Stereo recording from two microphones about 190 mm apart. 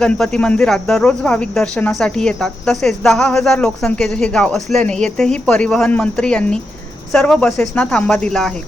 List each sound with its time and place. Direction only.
0.0 s speech: 5° left (ahead or behind)